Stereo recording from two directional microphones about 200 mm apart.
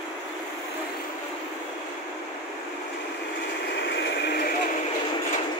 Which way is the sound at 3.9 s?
60° left (ahead or behind).